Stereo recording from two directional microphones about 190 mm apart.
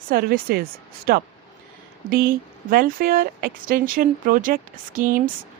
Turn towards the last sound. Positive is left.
turn(degrees=-45)  # may be behind; listen again after turning